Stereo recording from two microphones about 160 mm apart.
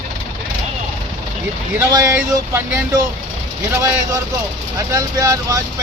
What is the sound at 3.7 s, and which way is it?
Speech, 20° right (ahead or behind).